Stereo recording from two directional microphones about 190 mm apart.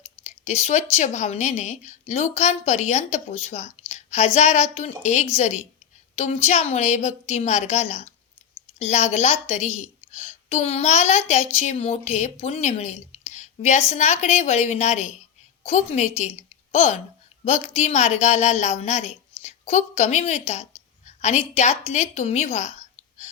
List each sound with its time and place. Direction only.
0.0 s a woman's voice: 35° left (ahead or behind)